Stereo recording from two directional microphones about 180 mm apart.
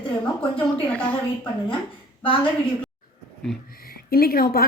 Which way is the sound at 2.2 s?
30° left (ahead or behind).